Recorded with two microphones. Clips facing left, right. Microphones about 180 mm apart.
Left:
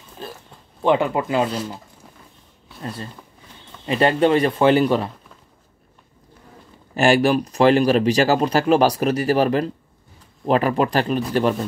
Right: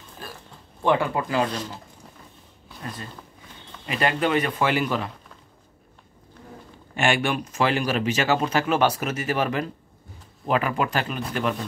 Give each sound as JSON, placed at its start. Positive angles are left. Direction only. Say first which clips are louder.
{"t": 0.2, "sound": "speech", "louder": "left 6 dB", "side_deg": 25}
{"t": 1.5, "sound": "speech", "louder": "left 5 dB", "side_deg": 10}
{"t": 2.8, "sound": "speech", "louder": "left 5 dB", "side_deg": 30}
{"t": 7.0, "sound": "speech", "louder": "left 7 dB", "side_deg": 35}